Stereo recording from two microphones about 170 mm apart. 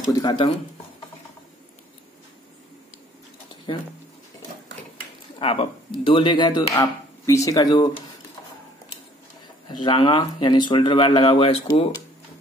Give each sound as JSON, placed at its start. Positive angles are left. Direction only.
{"t": 0.1, "sound": "speech", "side_deg": 25}
{"t": 3.7, "sound": "speech", "side_deg": 30}
{"t": 5.4, "sound": "speech", "side_deg": 35}
{"t": 9.7, "sound": "speech", "side_deg": 30}